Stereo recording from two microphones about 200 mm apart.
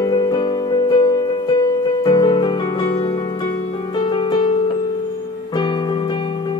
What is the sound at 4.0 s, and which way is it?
Music, 25° left (ahead or behind).